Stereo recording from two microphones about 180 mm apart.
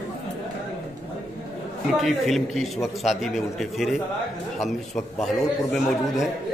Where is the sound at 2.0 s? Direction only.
Centre (ahead or behind).